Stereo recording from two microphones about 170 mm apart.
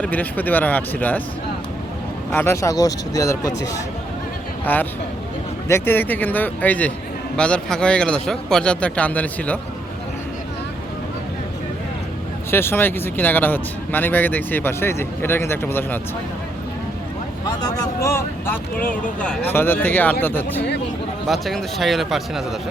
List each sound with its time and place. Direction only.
0.0 s speech: 10° left (ahead or behind)
2.3 s a man's voice: 15° left (ahead or behind)
12.5 s speech: 15° left (ahead or behind)
17.4 s speech: 20° left (ahead or behind)
21.2 s a man's voice: centre (ahead or behind)